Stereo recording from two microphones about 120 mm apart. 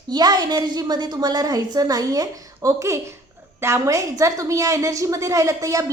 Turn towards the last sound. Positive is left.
turn(degrees=-25)  # may be behind; listen again after turning